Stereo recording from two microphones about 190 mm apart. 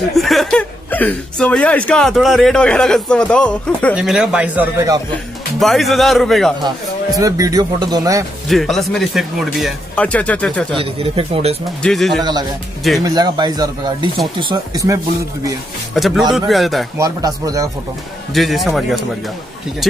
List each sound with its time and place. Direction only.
0.1 s speech: centre (ahead or behind)
7.2 s speech: 20° right (ahead or behind)
8.5 s speech: centre (ahead or behind)
10.8 s speech: 30° right (ahead or behind)
11.8 s speech: centre (ahead or behind)
12.2 s speech: 20° right (ahead or behind)
15.9 s speech: centre (ahead or behind)
17.0 s speech: 20° right (ahead or behind)
18.3 s speech: centre (ahead or behind)